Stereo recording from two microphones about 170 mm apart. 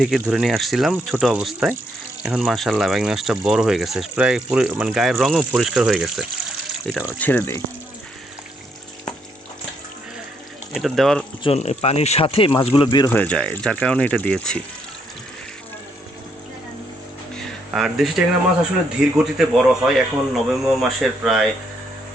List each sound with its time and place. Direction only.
0.0 s speech: 5° right (ahead or behind)
7.2 s speech: 10° left (ahead or behind)
10.8 s speech: centre (ahead or behind)
11.4 s speech: 40° left (ahead or behind)
13.1 s speech: 10° left (ahead or behind)
17.3 s a sound: centre (ahead or behind)
19.2 s speech: centre (ahead or behind)